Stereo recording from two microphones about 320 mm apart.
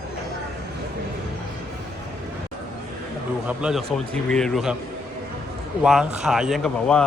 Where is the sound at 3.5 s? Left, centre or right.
Centre.